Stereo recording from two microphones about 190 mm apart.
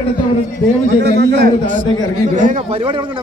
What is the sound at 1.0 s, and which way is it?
Speech, 60° right (ahead or behind).